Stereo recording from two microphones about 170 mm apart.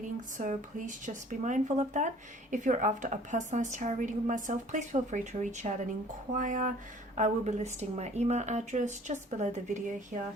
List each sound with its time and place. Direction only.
0.3 s speech: 50° right (ahead or behind)